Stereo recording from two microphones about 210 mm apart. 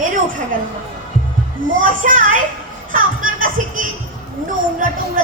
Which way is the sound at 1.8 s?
40° right (ahead or behind).